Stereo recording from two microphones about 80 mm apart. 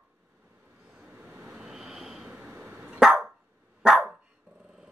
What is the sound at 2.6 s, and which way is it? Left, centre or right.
Dog, right.